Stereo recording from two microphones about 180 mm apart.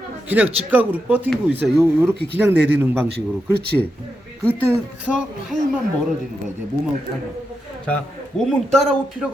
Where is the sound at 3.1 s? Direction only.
65° right (ahead or behind).